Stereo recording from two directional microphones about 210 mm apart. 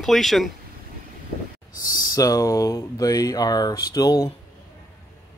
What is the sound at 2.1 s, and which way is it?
Speech, 15° left (ahead or behind).